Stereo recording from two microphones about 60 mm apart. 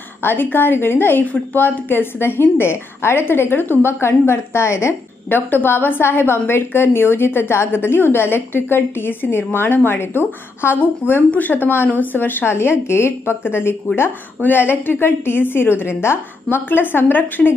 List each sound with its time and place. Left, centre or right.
0.2 s a woman's voice: left
5.3 s a woman's voice: left
11.2 s a woman's voice: left